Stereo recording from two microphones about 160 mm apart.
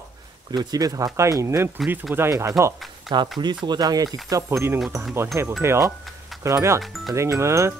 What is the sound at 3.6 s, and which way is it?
Speech, 25° right (ahead or behind).